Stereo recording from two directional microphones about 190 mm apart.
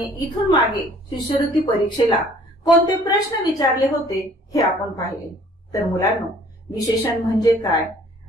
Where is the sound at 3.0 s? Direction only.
20° left (ahead or behind).